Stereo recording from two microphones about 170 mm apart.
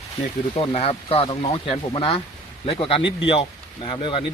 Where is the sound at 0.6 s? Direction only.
35° left (ahead or behind).